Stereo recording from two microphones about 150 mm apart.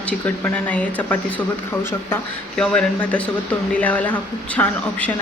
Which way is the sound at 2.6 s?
10° left (ahead or behind).